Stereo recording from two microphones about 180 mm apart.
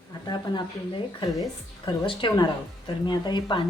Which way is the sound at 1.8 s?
25° left (ahead or behind).